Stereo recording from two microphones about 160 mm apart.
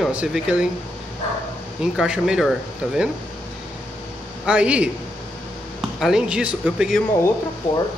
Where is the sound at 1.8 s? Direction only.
5° right (ahead or behind).